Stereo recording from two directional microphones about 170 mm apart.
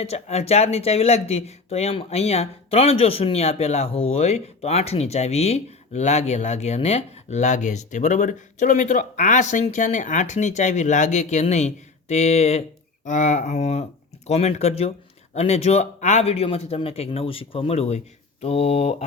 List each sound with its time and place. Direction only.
0.0 s speech: 40° left (ahead or behind)